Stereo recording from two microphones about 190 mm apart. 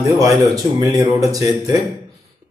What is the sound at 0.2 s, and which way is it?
Speech, 15° right (ahead or behind).